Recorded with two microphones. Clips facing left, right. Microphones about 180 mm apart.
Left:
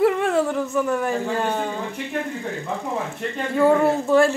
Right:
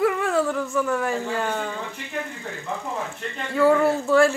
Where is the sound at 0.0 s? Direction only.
25° left (ahead or behind).